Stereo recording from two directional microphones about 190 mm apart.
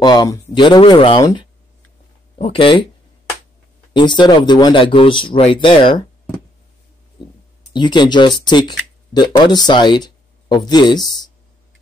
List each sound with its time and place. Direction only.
0.0 s a man's voice: 20° left (ahead or behind)
3.9 s a man's voice: 25° left (ahead or behind)
7.7 s a man's voice: 25° left (ahead or behind)